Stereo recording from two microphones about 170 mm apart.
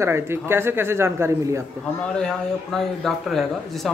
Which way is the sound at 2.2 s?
5° left (ahead or behind).